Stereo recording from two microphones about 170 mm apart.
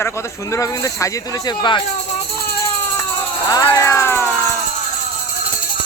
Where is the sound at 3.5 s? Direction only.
20° left (ahead or behind).